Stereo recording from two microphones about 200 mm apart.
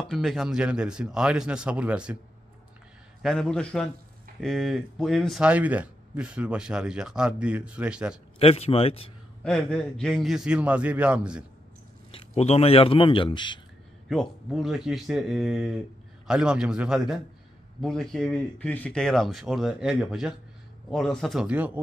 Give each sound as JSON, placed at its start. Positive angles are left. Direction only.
{"t": 0.1, "sound": "speech", "side_deg": 0}
{"t": 3.2, "sound": "speech", "side_deg": 5}
{"t": 8.4, "sound": "a man's voice", "side_deg": 30}
{"t": 9.4, "sound": "speech", "side_deg": 5}
{"t": 12.1, "sound": "a man's voice", "side_deg": 30}
{"t": 14.0, "sound": "a man's voice", "side_deg": 0}